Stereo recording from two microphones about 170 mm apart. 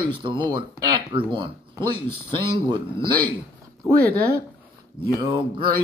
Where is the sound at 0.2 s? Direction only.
30° right (ahead or behind).